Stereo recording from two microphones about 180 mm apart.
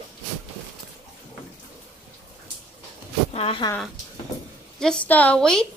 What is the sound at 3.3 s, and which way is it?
Speech, 35° left (ahead or behind).